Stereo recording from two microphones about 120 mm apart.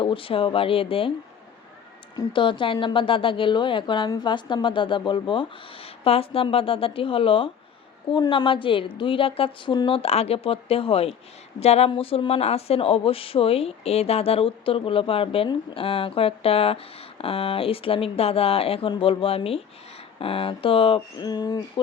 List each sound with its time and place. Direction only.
0.0 s a woman's voice: 45° left (ahead or behind)
2.1 s a woman's voice: 45° left (ahead or behind)
21.2 s speech: 35° left (ahead or behind)